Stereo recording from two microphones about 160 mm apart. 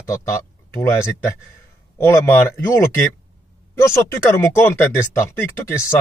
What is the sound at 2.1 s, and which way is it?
Speech, 15° left (ahead or behind).